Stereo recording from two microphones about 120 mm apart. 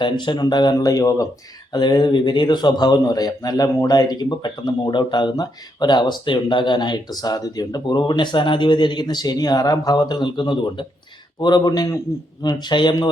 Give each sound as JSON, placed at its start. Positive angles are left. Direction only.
{"t": 0.0, "sound": "a man's voice", "side_deg": 40}